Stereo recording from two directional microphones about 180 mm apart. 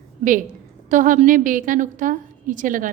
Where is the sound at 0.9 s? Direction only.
45° right (ahead or behind).